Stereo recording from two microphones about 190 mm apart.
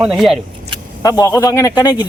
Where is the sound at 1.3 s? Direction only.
15° left (ahead or behind).